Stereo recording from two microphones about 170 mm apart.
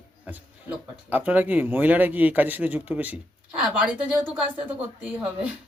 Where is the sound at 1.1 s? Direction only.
10° right (ahead or behind).